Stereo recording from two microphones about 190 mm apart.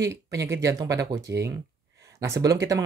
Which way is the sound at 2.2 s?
15° right (ahead or behind).